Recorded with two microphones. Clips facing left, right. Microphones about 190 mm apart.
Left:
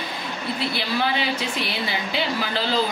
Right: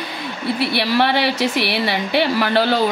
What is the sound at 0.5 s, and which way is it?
Speech, 75° right (ahead or behind).